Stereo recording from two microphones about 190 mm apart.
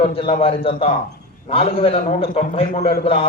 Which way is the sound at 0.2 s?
30° left (ahead or behind).